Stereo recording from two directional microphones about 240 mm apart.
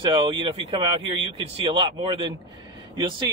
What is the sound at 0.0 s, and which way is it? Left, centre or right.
Speech, centre.